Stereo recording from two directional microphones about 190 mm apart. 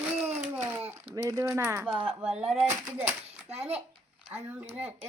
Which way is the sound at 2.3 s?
Centre (ahead or behind).